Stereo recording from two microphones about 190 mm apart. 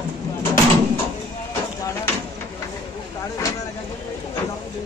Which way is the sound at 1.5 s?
15° left (ahead or behind).